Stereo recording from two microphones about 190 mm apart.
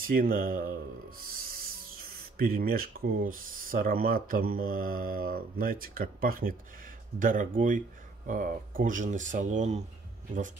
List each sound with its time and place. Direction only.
0.0 s speech: 50° right (ahead or behind)